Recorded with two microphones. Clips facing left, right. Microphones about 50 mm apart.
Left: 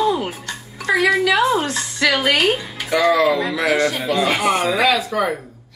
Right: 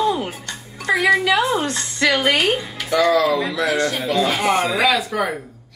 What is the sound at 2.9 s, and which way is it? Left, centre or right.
Speech, centre.